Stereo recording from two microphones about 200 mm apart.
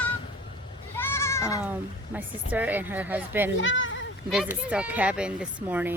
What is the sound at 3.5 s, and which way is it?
Speech, 70° left (ahead or behind).